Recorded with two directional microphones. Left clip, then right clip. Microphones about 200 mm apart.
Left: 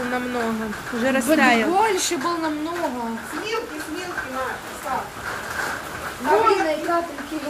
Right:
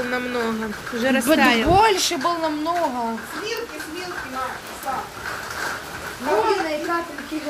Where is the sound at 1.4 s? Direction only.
5° left (ahead or behind).